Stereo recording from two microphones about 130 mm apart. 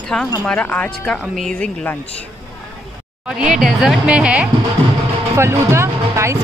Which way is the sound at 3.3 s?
5° right (ahead or behind).